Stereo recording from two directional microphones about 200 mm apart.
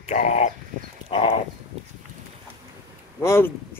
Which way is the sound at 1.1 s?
25° left (ahead or behind).